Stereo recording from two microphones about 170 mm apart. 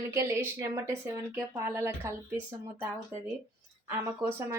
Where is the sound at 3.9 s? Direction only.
15° right (ahead or behind).